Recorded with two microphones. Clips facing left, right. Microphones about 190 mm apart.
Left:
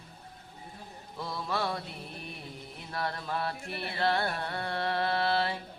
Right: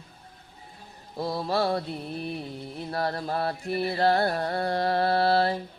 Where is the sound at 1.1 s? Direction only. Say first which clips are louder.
Right 7 dB; 35° right (ahead or behind).